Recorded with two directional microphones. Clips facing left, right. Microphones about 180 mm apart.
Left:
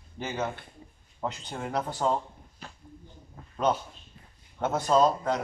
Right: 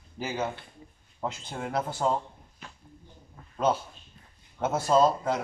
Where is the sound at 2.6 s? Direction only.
35° left (ahead or behind).